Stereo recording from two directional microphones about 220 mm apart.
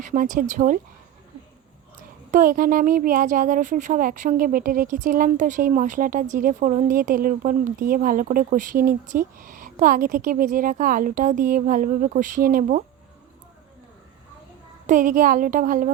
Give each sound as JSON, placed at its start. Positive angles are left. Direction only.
{"t": 0.0, "sound": "speech", "side_deg": -35}
{"t": 2.3, "sound": "speech", "side_deg": -40}
{"t": 14.8, "sound": "speech", "side_deg": -35}